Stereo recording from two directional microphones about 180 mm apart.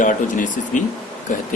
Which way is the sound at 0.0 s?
45° left (ahead or behind).